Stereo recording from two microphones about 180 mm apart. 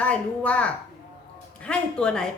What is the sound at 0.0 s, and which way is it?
A woman's voice, 5° left (ahead or behind).